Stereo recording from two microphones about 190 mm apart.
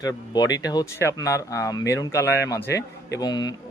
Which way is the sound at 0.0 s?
20° left (ahead or behind).